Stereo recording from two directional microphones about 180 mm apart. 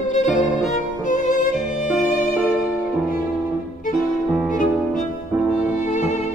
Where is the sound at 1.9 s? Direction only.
50° left (ahead or behind).